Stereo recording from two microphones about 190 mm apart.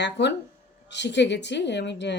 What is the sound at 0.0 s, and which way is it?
A woman's voice, 65° left (ahead or behind).